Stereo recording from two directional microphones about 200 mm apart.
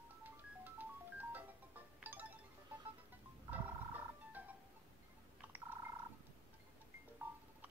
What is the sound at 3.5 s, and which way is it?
Music, 10° right (ahead or behind).